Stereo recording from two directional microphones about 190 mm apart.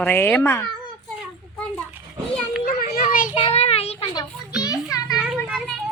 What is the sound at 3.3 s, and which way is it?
Child singing, 35° left (ahead or behind).